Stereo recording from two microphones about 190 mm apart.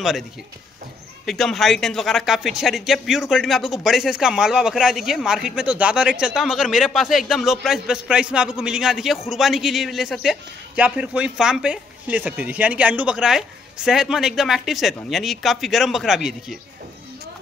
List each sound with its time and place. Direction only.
1.2 s speech: centre (ahead or behind)